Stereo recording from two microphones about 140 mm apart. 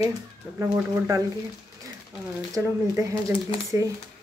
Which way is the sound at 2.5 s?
20° right (ahead or behind).